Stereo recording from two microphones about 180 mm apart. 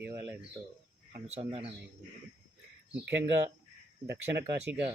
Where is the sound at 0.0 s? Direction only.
10° right (ahead or behind).